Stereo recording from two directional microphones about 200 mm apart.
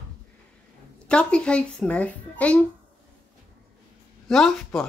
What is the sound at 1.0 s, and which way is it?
A child's voice, 5° left (ahead or behind).